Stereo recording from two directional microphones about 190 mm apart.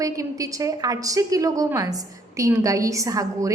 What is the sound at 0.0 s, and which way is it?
A woman's voice, 15° right (ahead or behind).